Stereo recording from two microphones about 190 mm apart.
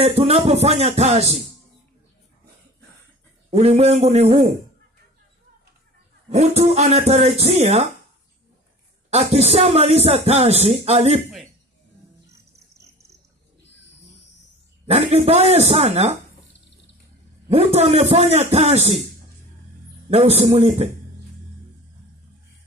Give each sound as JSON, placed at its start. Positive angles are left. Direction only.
{"t": 0.0, "sound": "speech", "side_deg": -30}
{"t": 3.4, "sound": "speech", "side_deg": -35}
{"t": 6.3, "sound": "speech", "side_deg": -35}
{"t": 9.1, "sound": "speech", "side_deg": -35}
{"t": 14.9, "sound": "speech", "side_deg": -35}
{"t": 17.5, "sound": "speech", "side_deg": -30}
{"t": 20.1, "sound": "speech", "side_deg": -35}